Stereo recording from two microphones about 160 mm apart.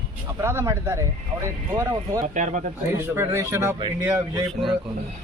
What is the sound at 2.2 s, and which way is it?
Speech, 50° right (ahead or behind).